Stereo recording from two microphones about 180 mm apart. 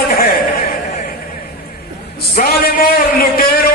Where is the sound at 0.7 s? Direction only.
50° left (ahead or behind).